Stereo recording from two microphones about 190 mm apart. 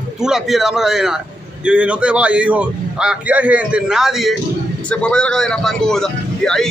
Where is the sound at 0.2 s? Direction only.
5° right (ahead or behind).